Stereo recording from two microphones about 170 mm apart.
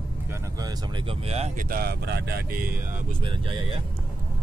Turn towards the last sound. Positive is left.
turn(degrees=-30)  # may be behind; listen again after turning